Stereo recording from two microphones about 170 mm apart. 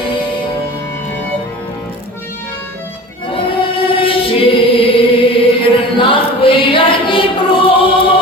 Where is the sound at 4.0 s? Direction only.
30° left (ahead or behind).